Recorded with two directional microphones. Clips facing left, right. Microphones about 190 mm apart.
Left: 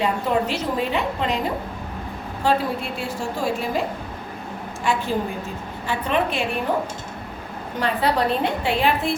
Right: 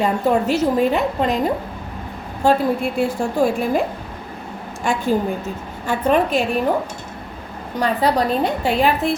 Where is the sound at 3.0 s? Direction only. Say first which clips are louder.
Right 10 dB; 55° right (ahead or behind).